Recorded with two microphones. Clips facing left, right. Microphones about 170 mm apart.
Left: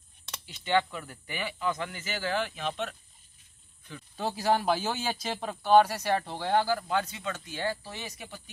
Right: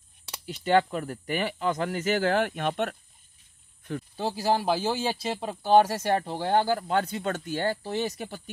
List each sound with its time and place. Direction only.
0.7 s speech: 45° right (ahead or behind)
4.2 s speech: 35° right (ahead or behind); by 7.7 s 50° right (ahead or behind)
7.7 s speech: 30° right (ahead or behind)